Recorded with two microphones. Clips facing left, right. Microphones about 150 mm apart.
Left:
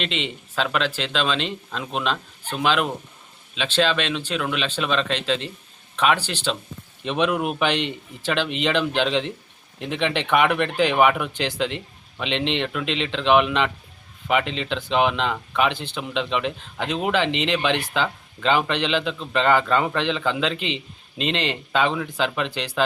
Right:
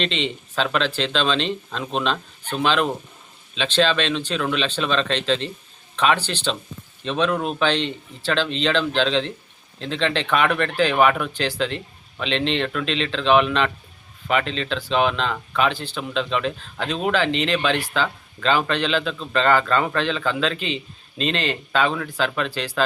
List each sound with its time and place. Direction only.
0.0 s speech: 10° left (ahead or behind)